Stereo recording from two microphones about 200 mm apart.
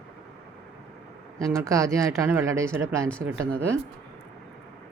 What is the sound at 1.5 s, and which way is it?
Speech, 15° right (ahead or behind).